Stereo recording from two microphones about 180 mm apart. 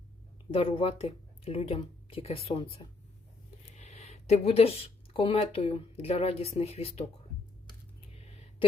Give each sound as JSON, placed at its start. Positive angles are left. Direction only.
{"t": 0.5, "sound": "speech", "side_deg": 30}